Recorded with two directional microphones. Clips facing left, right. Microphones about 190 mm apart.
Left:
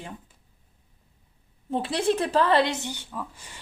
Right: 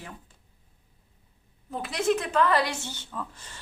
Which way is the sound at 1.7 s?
30° left (ahead or behind).